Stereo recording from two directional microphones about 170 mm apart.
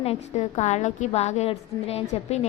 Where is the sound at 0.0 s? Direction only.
40° left (ahead or behind).